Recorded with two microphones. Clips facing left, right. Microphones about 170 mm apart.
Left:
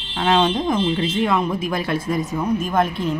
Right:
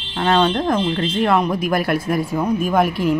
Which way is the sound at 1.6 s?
20° left (ahead or behind).